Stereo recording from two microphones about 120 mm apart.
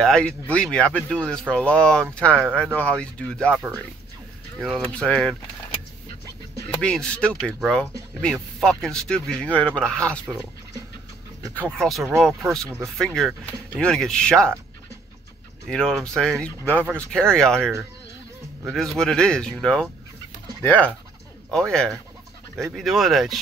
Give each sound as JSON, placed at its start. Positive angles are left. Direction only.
{"t": 0.0, "sound": "speech", "side_deg": 10}
{"t": 4.6, "sound": "speech", "side_deg": 0}
{"t": 6.7, "sound": "speech", "side_deg": 5}
{"t": 11.8, "sound": "speech", "side_deg": 0}
{"t": 15.7, "sound": "speech", "side_deg": 5}